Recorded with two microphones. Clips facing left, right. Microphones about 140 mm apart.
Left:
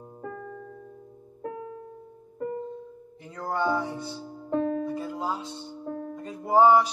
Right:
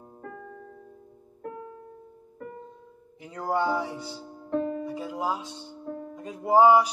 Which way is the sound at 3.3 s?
15° right (ahead or behind).